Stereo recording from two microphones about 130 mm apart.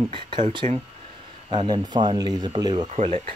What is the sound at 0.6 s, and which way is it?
Speech, 55° right (ahead or behind).